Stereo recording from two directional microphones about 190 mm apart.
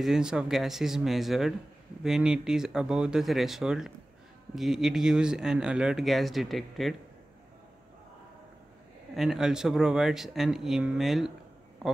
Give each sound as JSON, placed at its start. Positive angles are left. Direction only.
{"t": 0.0, "sound": "speech", "side_deg": -5}
{"t": 9.1, "sound": "speech", "side_deg": 0}